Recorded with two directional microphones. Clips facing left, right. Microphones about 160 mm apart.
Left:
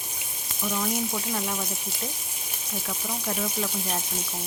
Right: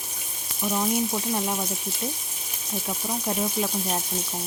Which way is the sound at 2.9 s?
20° right (ahead or behind).